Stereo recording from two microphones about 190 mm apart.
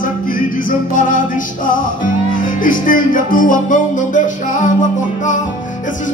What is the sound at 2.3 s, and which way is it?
Music, 45° left (ahead or behind).